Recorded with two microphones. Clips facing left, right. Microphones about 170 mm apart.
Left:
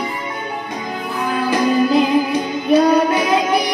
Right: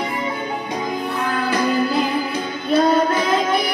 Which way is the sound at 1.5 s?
15° left (ahead or behind).